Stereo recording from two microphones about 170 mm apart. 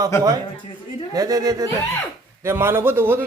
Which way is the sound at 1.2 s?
20° right (ahead or behind).